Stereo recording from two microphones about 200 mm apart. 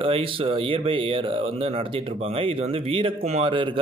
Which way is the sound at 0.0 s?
25° right (ahead or behind).